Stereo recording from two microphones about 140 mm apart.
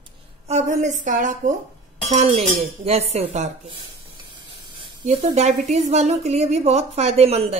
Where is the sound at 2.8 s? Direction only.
50° right (ahead or behind).